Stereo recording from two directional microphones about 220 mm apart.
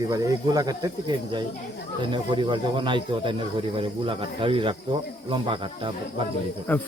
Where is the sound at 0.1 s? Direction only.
15° right (ahead or behind).